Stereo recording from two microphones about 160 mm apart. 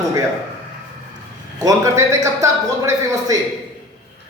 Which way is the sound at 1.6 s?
20° right (ahead or behind).